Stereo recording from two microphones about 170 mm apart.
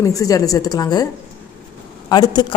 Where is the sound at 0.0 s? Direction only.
20° left (ahead or behind).